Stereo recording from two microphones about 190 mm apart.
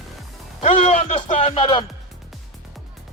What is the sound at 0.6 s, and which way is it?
A man's voice, 30° left (ahead or behind).